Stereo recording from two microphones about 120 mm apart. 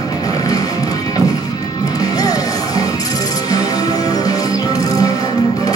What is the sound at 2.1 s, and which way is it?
Music, 30° left (ahead or behind).